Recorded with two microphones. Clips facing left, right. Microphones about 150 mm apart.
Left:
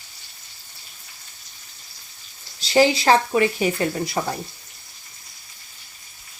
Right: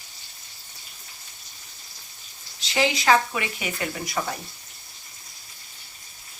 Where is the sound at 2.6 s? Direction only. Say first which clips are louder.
Left 7 dB; 35° left (ahead or behind).